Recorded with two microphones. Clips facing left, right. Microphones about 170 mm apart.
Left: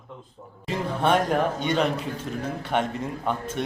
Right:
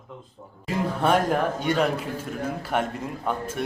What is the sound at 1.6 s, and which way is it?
A man's voice, 5° right (ahead or behind).